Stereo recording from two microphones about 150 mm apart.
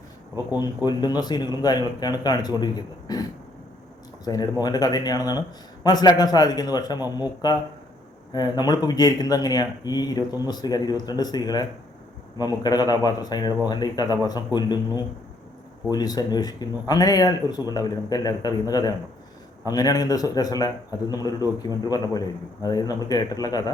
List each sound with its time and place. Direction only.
0.9 s speech: 30° left (ahead or behind)
4.3 s speech: 30° left (ahead or behind)